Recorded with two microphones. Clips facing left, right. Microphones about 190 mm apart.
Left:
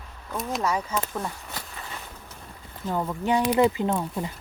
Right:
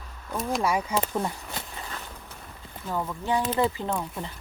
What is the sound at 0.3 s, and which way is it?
Speech, 10° right (ahead or behind).